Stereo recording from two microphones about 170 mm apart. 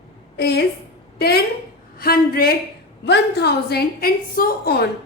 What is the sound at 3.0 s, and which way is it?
A woman's voice, 80° left.